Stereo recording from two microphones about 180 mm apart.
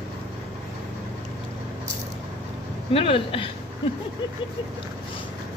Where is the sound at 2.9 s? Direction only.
30° left (ahead or behind).